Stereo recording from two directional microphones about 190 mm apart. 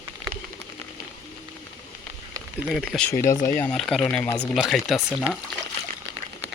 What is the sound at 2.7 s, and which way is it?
Speech, 5° left (ahead or behind).